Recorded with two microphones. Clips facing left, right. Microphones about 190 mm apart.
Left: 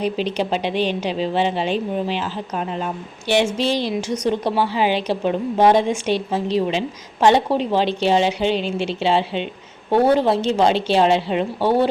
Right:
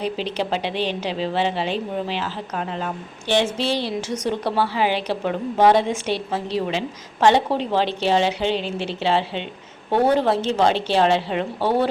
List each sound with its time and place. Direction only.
0.0 s a woman's voice: 15° left (ahead or behind)